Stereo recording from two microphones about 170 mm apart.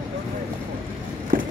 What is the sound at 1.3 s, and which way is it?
Walk, 55° right (ahead or behind).